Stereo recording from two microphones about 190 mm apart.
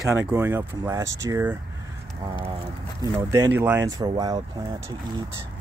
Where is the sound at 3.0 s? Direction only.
15° right (ahead or behind).